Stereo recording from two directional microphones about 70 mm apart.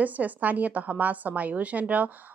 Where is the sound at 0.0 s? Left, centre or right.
Right.